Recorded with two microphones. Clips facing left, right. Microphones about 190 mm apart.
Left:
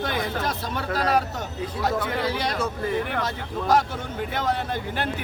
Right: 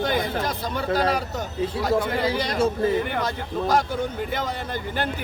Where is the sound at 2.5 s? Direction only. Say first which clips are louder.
Right 6 dB; 30° right (ahead or behind).